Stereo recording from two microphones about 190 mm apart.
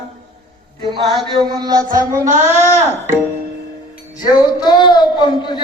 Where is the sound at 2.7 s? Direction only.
10° right (ahead or behind).